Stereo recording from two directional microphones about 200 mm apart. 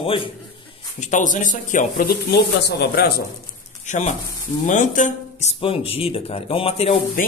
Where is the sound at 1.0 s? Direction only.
40° left (ahead or behind).